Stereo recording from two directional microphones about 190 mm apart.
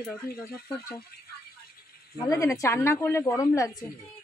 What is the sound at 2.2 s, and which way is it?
A woman's voice, 15° left (ahead or behind).